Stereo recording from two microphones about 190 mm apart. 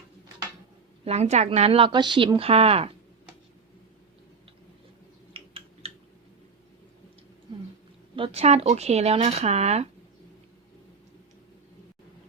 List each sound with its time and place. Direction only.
1.0 s speech: 35° right (ahead or behind)
5.3 s a sound: 30° right (ahead or behind)
8.1 s speech: 30° right (ahead or behind)